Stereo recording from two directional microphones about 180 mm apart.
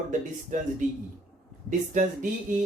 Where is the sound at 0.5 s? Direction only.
45° right (ahead or behind).